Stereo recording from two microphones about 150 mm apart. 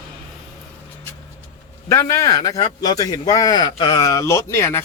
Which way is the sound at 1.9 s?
20° left (ahead or behind).